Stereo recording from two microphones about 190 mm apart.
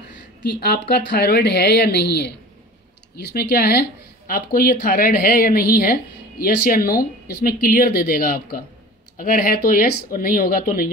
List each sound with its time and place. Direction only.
0.5 s speech: 55° left (ahead or behind)